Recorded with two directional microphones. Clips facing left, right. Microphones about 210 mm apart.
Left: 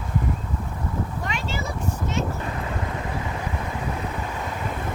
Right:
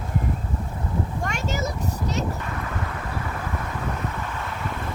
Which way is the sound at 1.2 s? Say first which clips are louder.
Right 2 dB; 45° right (ahead or behind).